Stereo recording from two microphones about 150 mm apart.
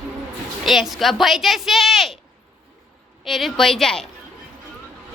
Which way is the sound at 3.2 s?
Centre (ahead or behind).